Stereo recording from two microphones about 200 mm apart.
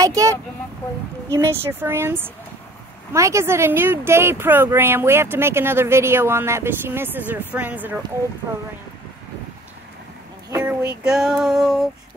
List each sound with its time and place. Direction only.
0.0 s speech: 15° right (ahead or behind)
10.5 s female singing: 10° right (ahead or behind)